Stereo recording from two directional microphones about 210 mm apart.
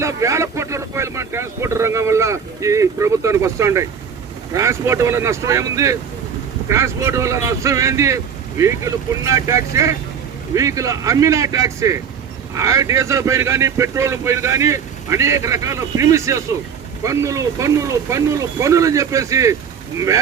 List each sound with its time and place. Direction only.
0.0 s speech: 15° right (ahead or behind)